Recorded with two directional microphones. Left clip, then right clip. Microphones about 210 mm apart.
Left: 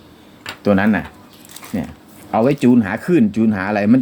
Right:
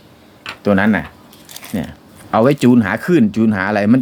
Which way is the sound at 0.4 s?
5° right (ahead or behind).